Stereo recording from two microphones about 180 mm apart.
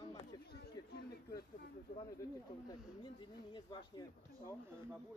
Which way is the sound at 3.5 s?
25° left (ahead or behind).